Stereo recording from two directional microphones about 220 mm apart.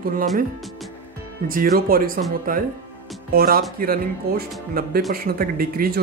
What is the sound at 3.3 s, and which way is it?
Speech, 40° right (ahead or behind).